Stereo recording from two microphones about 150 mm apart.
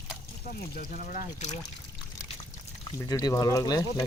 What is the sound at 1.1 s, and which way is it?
Speech, 50° left (ahead or behind).